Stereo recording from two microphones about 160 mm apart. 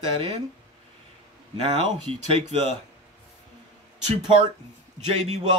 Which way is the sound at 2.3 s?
40° right (ahead or behind).